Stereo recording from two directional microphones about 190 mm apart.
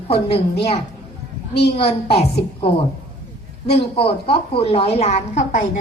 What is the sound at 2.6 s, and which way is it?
A woman's voice, 30° left (ahead or behind).